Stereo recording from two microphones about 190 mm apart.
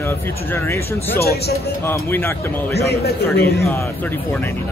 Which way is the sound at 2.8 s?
55° left (ahead or behind).